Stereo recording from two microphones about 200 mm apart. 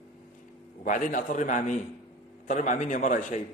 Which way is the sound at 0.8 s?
40° left (ahead or behind).